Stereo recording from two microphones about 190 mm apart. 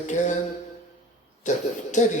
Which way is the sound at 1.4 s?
40° left (ahead or behind).